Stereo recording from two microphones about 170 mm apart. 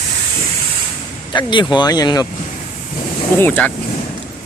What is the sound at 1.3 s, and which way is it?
Speech, 25° left (ahead or behind).